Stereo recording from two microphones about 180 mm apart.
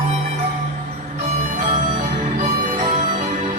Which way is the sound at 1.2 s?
40° right (ahead or behind).